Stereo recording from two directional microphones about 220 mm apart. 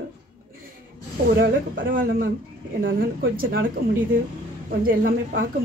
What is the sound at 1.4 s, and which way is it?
A woman's voice, 40° right (ahead or behind).